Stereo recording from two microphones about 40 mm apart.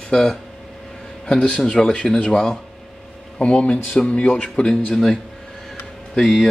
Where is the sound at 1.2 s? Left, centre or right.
Left.